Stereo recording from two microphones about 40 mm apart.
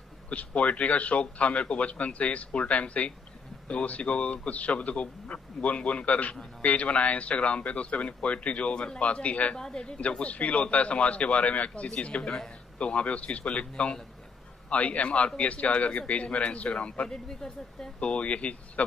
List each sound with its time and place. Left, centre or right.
0.3 s speech: left
9.6 s speech: left
10.0 s speech: left
17.1 s speech: centre